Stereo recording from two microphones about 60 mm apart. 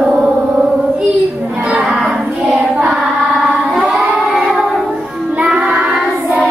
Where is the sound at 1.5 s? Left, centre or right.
Centre.